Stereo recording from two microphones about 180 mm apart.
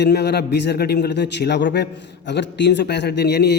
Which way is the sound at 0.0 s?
65° left (ahead or behind).